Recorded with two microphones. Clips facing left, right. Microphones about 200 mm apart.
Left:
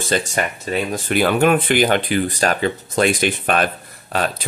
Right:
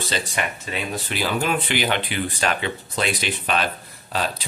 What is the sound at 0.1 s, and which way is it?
Speech, 45° left (ahead or behind).